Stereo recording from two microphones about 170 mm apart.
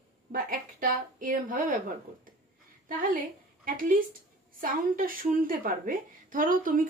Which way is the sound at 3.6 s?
55° right (ahead or behind).